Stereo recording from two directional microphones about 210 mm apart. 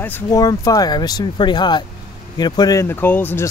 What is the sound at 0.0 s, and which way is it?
Speech, 10° left (ahead or behind).